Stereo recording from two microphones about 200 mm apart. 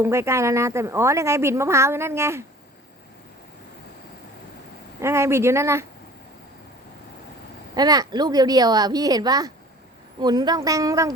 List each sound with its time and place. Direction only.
0.0 s speech: 15° right (ahead or behind)
4.9 s speech: 15° right (ahead or behind)
7.8 s speech: 20° right (ahead or behind)